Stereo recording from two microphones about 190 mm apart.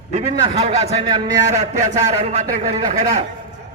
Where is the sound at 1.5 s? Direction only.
35° right (ahead or behind).